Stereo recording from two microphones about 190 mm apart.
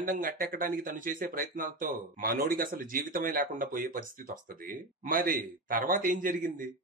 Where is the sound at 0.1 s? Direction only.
45° right (ahead or behind).